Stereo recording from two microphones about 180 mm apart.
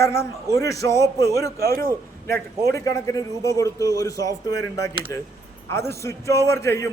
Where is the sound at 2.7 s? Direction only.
15° left (ahead or behind).